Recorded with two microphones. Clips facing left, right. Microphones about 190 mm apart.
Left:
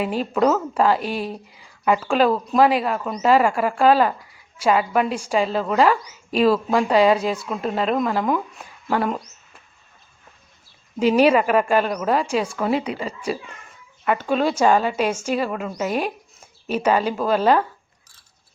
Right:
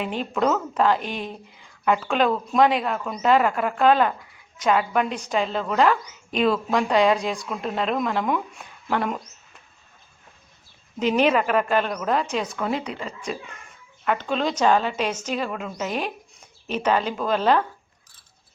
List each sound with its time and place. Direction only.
0.0 s a woman's voice: 5° left (ahead or behind)
11.2 s speech: 5° left (ahead or behind)